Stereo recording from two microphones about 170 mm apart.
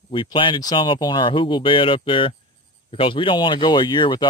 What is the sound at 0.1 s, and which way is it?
Speech, 30° left (ahead or behind).